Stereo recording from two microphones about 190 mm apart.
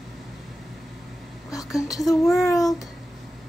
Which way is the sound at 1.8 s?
20° left (ahead or behind).